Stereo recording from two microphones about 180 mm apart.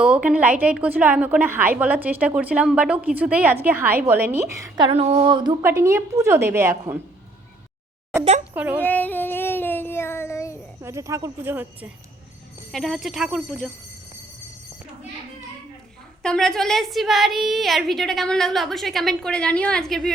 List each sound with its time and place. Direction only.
0.0 s a woman's voice: 5° right (ahead or behind)
4.9 s a sound: 30° right (ahead or behind)
5.6 s a woman's voice: 15° right (ahead or behind)
8.2 s speech: 40° right (ahead or behind)
8.5 s a woman's voice: 10° right (ahead or behind)
8.8 s child singing: 10° left (ahead or behind)
10.8 s a woman's voice: 15° right (ahead or behind)
12.7 s a woman's voice: centre (ahead or behind)
16.2 s a woman's voice: 5° left (ahead or behind)